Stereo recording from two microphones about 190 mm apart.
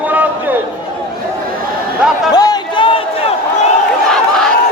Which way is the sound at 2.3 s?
20° left (ahead or behind).